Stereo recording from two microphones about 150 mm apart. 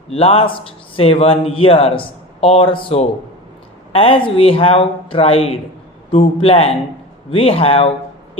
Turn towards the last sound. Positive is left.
turn(degrees=40)  # may be behind; listen again after turning